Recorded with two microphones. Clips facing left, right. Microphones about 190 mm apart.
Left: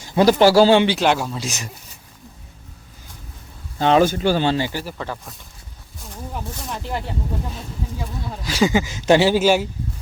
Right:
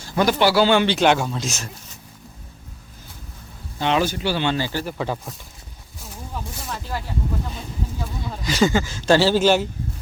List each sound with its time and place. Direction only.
0.2 s speech: 35° left (ahead or behind)
0.9 s speech: centre (ahead or behind)
1.5 s speech: 15° left (ahead or behind)
3.8 s speech: 40° left (ahead or behind)
4.5 s speech: 15° left (ahead or behind)
4.9 s speech: 15° right (ahead or behind)
8.2 s speech: 5° left (ahead or behind)